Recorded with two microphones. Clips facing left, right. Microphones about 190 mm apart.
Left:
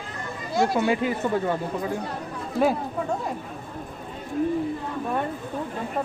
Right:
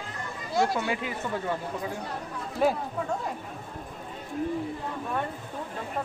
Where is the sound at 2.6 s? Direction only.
60° left (ahead or behind).